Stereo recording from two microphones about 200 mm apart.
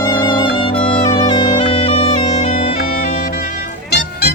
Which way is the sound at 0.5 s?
25° left (ahead or behind).